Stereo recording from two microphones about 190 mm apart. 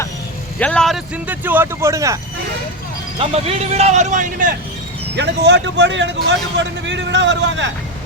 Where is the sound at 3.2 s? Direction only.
30° right (ahead or behind).